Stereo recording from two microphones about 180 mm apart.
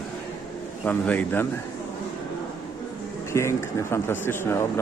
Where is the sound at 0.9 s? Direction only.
10° left (ahead or behind).